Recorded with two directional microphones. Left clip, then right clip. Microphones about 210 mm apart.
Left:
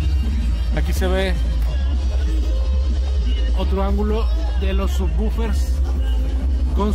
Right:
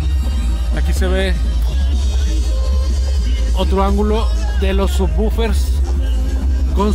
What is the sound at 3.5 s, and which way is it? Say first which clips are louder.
Speech: right 7 dB; 20° right (ahead or behind).